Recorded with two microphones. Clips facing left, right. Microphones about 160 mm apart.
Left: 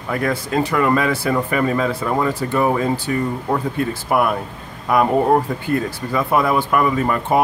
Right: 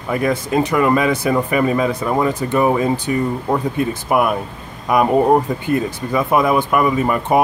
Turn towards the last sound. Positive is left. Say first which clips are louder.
# right 2 dB
turn(degrees=-15)  # may be behind; listen again after turning